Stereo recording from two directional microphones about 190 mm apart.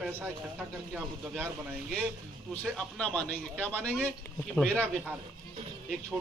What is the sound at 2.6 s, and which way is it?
A man's voice, centre (ahead or behind).